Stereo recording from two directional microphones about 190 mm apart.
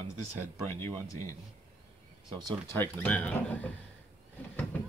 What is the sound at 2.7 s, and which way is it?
Speech, 10° left (ahead or behind).